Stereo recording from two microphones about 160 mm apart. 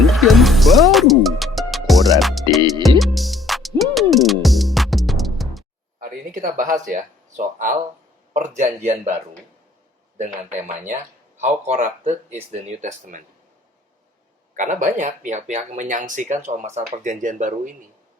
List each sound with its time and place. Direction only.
0.0 s music: centre (ahead or behind)
6.0 s a sound: 55° right (ahead or behind)
6.9 s speech: 55° right (ahead or behind)
10.8 s speech: 50° right (ahead or behind)
14.5 s speech: 55° right (ahead or behind)